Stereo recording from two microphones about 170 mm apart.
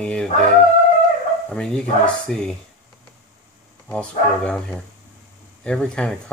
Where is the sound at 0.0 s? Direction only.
5° left (ahead or behind).